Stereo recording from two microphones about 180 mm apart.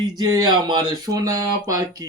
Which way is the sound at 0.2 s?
20° right (ahead or behind).